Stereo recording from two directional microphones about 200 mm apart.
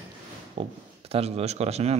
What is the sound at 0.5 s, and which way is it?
Speech, 30° right (ahead or behind).